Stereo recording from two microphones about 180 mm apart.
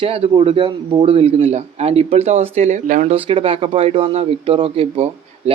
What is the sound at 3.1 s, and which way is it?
Speech, 30° right (ahead or behind).